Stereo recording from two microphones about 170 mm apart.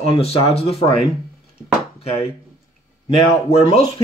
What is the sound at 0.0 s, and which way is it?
Speech, 35° left (ahead or behind).